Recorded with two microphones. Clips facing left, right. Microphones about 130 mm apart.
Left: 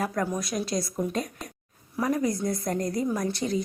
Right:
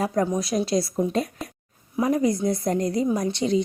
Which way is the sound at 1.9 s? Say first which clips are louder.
Right 4 dB; 20° right (ahead or behind).